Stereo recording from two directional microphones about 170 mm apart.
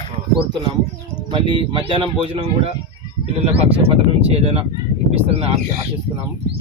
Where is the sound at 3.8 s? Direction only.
35° right (ahead or behind).